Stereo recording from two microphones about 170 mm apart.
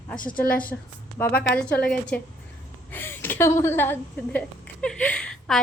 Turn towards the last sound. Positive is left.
turn(degrees=5)  # may be behind; listen again after turning